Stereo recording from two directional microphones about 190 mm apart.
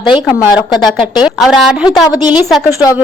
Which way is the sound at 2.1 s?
20° left (ahead or behind).